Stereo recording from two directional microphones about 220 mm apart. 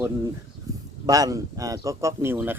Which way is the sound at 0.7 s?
15° right (ahead or behind).